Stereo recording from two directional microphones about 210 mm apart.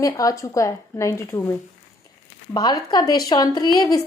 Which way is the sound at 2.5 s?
20° left (ahead or behind).